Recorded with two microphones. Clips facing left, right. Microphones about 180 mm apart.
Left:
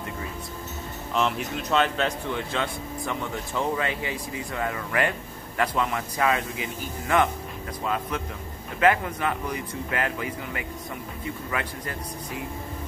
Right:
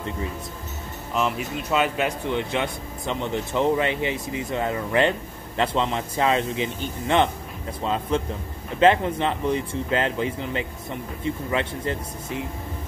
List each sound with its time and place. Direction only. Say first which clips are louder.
1.1 s a man's voice: right 1 dB; 5° right (ahead or behind); by 12.0 s 25° right (ahead or behind)